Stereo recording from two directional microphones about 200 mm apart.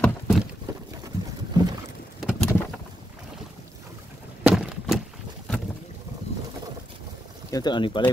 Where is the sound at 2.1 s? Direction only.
5° right (ahead or behind).